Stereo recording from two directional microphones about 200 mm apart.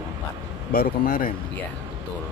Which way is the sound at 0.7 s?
45° left (ahead or behind).